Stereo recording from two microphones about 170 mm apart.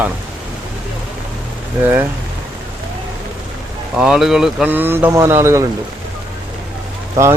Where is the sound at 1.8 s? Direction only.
10° right (ahead or behind).